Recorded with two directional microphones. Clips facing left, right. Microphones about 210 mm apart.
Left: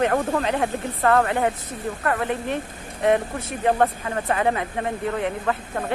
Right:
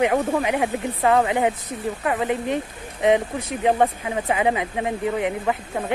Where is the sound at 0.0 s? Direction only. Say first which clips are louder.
Right 1 dB; 10° right (ahead or behind).